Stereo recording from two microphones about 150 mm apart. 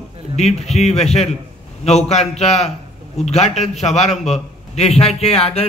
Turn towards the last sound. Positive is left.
turn(degrees=45)  # may be behind; listen again after turning